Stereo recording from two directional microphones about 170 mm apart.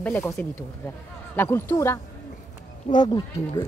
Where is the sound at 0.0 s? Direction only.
10° left (ahead or behind).